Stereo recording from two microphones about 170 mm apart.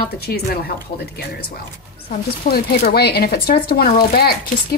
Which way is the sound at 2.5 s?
65° left (ahead or behind).